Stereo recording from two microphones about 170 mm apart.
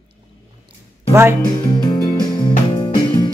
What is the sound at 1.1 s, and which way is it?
Speech, 15° right (ahead or behind).